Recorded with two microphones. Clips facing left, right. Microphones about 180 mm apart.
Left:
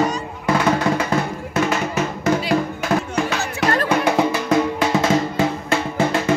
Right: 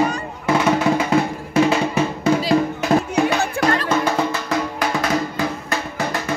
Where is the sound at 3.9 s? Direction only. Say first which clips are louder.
Left 2 dB; 20° left (ahead or behind).